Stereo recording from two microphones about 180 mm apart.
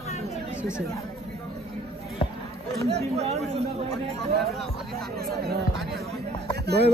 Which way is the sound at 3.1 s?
35° right (ahead or behind).